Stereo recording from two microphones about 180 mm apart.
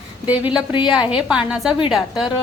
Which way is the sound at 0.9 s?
5° right (ahead or behind).